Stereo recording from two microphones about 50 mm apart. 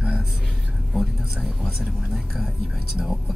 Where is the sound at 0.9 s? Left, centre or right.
Centre.